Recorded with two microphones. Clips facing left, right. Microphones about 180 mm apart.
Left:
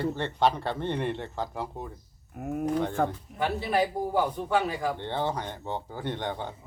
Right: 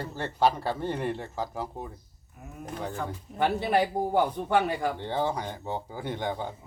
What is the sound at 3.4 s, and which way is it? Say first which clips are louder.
Speech: right 3 dB; 60° right (ahead or behind).